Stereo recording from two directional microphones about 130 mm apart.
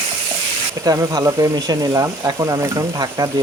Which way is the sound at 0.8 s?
30° right (ahead or behind).